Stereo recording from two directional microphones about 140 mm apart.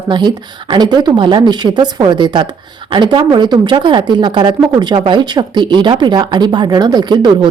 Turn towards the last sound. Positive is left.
turn(degrees=-35)  # may be behind; listen again after turning